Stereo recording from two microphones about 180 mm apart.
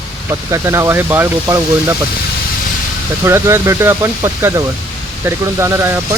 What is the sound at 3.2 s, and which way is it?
Speech, 15° right (ahead or behind).